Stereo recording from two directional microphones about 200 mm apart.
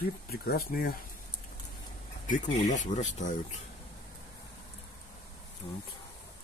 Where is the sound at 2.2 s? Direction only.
40° left (ahead or behind).